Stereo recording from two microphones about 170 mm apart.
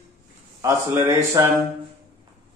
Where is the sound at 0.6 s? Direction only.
15° right (ahead or behind).